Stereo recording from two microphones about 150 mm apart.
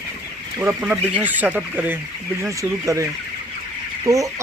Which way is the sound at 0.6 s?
15° right (ahead or behind).